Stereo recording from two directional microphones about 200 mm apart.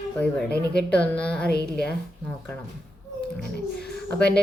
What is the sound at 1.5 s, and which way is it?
Speech, 55° left (ahead or behind).